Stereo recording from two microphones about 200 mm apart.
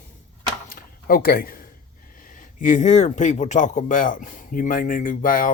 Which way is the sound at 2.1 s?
40° left (ahead or behind).